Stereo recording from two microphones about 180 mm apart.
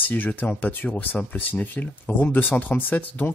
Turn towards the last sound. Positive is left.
turn(degrees=10)  # may be behind; listen again after turning